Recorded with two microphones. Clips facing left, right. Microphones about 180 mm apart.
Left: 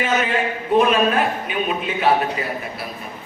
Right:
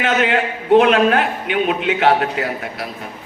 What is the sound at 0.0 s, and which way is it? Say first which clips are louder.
A man's voice: right 3 dB; 85° right.